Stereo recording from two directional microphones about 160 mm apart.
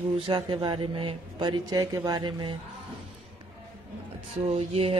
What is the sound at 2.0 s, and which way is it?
Speech, 25° right (ahead or behind).